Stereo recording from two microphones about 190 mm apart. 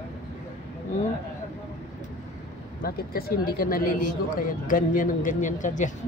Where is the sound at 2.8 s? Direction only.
50° left (ahead or behind).